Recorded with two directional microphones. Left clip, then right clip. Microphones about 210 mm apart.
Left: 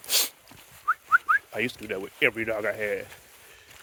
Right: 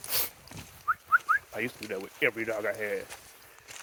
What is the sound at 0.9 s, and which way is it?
Speech, 60° left (ahead or behind).